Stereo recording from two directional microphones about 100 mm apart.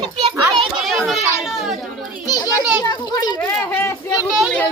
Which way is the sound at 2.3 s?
40° left (ahead or behind).